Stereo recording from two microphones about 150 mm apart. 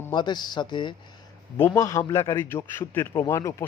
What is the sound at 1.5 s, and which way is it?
A man's voice, 20° left (ahead or behind).